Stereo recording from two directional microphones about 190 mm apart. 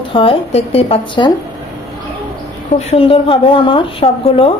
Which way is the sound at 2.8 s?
30° left (ahead or behind).